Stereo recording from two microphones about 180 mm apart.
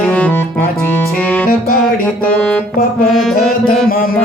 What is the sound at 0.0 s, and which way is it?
Music, 5° left (ahead or behind).